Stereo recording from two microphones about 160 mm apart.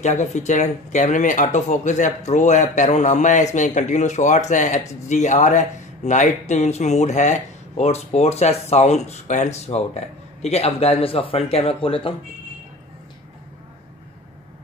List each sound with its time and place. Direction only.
0.0 s speech: 45° left (ahead or behind)